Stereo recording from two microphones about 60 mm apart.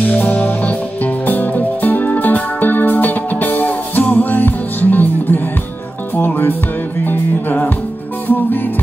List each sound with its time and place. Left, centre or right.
0.0 s music: left